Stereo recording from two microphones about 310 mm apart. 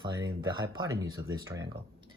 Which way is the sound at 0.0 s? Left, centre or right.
Centre.